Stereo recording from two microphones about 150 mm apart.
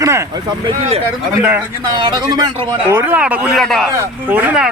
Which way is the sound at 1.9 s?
30° right (ahead or behind).